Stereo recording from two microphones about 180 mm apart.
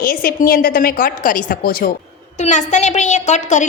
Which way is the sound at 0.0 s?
55° left (ahead or behind).